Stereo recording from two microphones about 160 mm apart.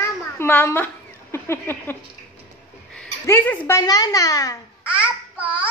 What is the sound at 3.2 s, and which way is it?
A child's voice, 15° left (ahead or behind).